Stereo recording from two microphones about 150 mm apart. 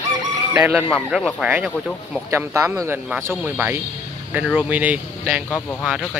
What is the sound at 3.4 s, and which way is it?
Speech, 15° right (ahead or behind).